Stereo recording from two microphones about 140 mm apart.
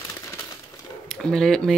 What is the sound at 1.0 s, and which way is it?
Speech, 5° left (ahead or behind).